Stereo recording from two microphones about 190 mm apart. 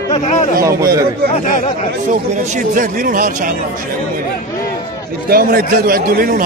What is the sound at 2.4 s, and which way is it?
A man's voice, 45° right (ahead or behind).